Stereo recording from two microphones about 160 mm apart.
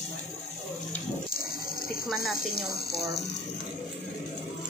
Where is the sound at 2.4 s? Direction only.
70° left (ahead or behind); by 3.2 s 85° left.